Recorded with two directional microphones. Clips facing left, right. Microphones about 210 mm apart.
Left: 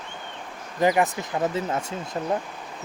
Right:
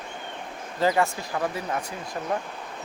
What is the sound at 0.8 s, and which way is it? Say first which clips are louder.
Speech: left 2 dB; 20° left (ahead or behind).